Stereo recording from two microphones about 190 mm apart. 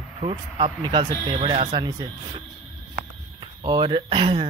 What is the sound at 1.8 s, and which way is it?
Speech, 20° right (ahead or behind).